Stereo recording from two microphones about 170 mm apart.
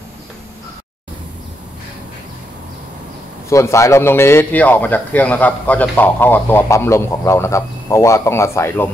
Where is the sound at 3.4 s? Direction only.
15° left (ahead or behind).